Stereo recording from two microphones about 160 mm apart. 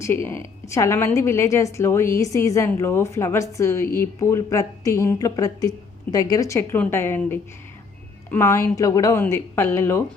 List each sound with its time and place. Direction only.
0.0 s a woman's voice: 15° left (ahead or behind)